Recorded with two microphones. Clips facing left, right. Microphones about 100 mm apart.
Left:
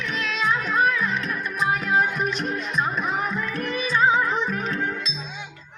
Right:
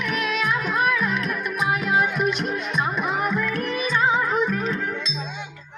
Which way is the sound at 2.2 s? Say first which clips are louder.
Right 3 dB; 40° left (ahead or behind).